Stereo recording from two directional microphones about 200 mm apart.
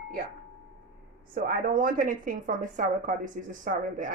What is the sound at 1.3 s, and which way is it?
A woman's voice, 45° right (ahead or behind).